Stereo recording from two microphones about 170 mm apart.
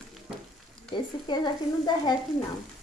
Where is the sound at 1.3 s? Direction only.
25° left (ahead or behind).